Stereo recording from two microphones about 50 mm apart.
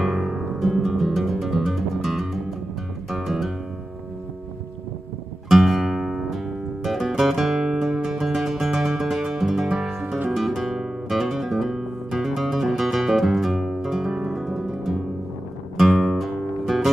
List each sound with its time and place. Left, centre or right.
0.0 s music: centre
5.5 s music: centre
10.3 s guitar: centre
15.8 s music: centre